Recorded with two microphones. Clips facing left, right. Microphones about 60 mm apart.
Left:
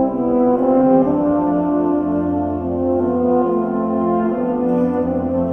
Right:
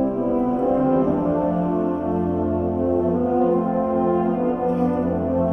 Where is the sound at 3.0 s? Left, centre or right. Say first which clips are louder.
Left 5 dB; centre.